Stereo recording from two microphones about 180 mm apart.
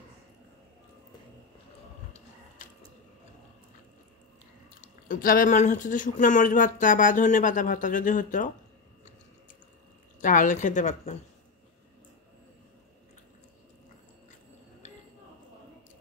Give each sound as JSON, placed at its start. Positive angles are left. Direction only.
{"t": 4.8, "sound": "speech", "side_deg": 50}
{"t": 10.2, "sound": "speech", "side_deg": 45}